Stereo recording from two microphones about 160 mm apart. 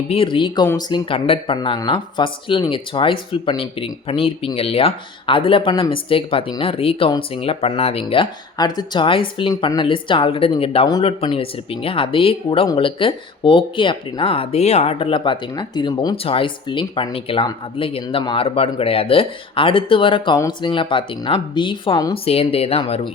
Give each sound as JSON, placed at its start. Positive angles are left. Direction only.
{"t": 0.1, "sound": "speech", "side_deg": 35}